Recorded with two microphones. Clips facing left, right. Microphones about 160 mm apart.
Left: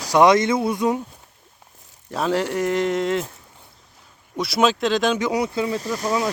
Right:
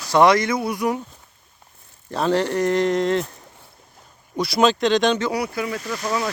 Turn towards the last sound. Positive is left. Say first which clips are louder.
# left 2 dB
turn(degrees=20)  # may be behind; listen again after turning